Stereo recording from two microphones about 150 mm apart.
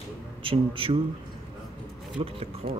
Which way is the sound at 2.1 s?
40° right (ahead or behind).